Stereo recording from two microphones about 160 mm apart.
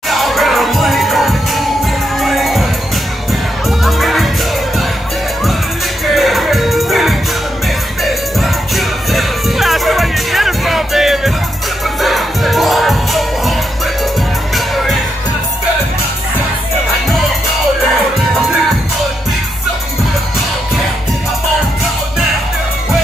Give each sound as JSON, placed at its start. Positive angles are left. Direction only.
{"t": 0.1, "sound": "music", "side_deg": 0}
{"t": 3.8, "sound": "crowd", "side_deg": 0}
{"t": 6.1, "sound": "music", "side_deg": 0}